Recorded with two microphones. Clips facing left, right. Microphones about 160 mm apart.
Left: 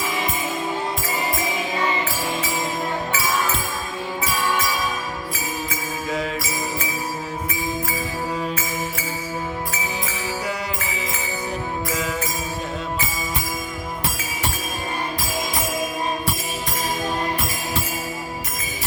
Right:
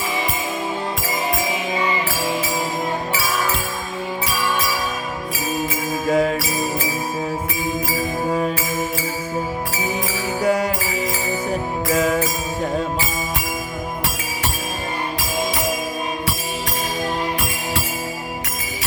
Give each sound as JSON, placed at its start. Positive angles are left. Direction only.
{"t": 6.1, "sound": "music", "side_deg": -50}
{"t": 10.4, "sound": "music", "side_deg": -45}
{"t": 11.9, "sound": "music", "side_deg": -50}